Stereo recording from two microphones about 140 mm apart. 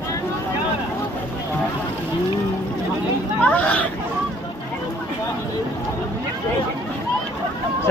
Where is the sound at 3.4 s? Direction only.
10° left (ahead or behind).